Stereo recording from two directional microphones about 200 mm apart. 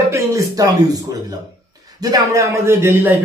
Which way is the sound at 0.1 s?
15° right (ahead or behind).